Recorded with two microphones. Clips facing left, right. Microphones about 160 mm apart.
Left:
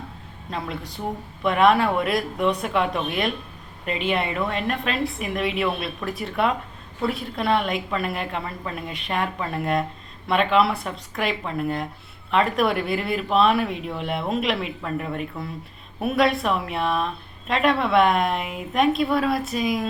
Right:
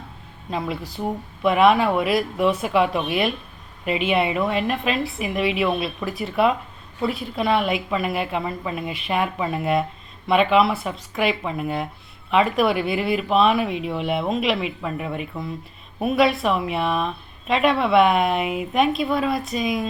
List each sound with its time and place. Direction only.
0.5 s speech: 5° right (ahead or behind)